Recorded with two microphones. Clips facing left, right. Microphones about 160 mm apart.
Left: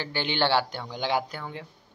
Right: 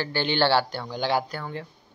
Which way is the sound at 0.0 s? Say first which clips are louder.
Right 3 dB; 15° left (ahead or behind).